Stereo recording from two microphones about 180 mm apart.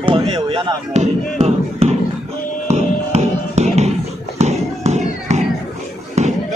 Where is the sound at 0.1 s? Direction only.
30° right (ahead or behind).